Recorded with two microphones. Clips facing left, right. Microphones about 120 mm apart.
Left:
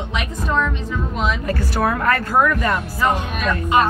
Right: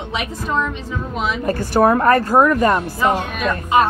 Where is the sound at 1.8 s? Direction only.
35° right (ahead or behind).